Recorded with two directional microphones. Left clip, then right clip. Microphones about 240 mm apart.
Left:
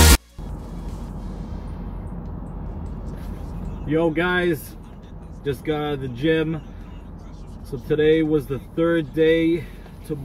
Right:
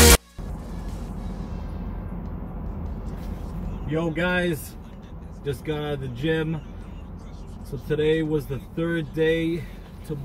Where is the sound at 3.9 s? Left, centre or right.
Centre.